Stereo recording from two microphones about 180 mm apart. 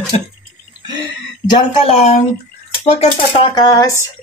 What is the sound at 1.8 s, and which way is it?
Speech, 40° left (ahead or behind).